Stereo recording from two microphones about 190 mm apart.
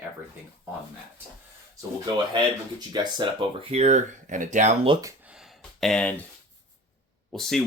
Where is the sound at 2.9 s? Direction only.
25° right (ahead or behind); by 4.7 s 40° right (ahead or behind).